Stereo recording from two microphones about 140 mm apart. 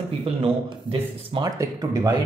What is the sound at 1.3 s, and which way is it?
Speech, 30° right (ahead or behind).